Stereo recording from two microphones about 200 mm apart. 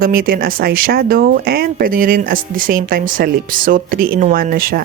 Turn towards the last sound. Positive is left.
turn(degrees=-45)  # may be behind; listen again after turning